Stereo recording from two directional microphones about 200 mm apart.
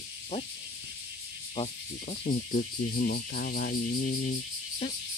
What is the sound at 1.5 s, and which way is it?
Speech, 35° left (ahead or behind).